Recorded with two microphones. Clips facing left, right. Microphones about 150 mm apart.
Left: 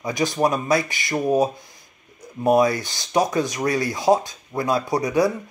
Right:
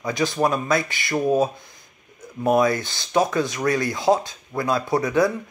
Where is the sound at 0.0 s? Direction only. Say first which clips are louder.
Left 1 dB; 15° left (ahead or behind).